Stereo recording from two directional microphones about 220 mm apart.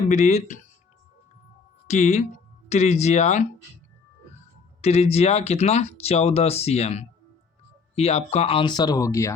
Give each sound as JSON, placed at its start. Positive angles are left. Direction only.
{"t": 0.1, "sound": "speech", "side_deg": 30}
{"t": 1.9, "sound": "speech", "side_deg": 30}
{"t": 4.8, "sound": "speech", "side_deg": 30}